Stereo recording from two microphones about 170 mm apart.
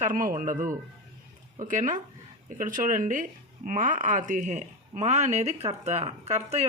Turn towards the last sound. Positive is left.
turn(degrees=-40)  # may be behind; listen again after turning